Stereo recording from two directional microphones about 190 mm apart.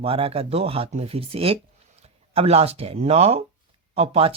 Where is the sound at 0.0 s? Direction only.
30° right (ahead or behind).